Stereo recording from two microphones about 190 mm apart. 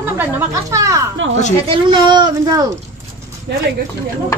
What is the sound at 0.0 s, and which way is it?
A child's voice, 15° right (ahead or behind).